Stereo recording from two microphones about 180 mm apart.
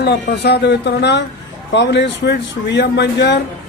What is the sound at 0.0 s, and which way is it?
Speech, 65° left (ahead or behind).